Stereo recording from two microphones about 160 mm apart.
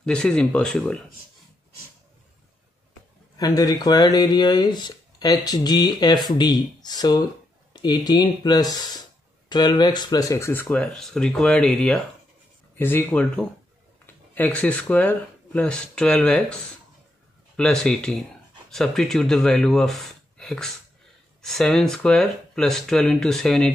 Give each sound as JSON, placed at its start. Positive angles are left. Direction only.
{"t": 0.0, "sound": "speech", "side_deg": 5}
{"t": 3.3, "sound": "speech", "side_deg": 25}
{"t": 17.6, "sound": "speech", "side_deg": 5}